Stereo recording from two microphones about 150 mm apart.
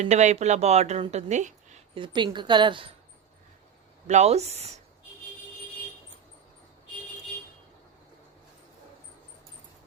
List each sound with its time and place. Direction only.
0.0 s speech: 50° right (ahead or behind)
2.0 s a woman's voice: 30° right (ahead or behind)
4.0 s speech: 50° right (ahead or behind)